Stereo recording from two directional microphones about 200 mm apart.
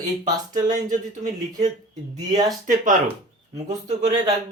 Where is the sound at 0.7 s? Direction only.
40° right (ahead or behind).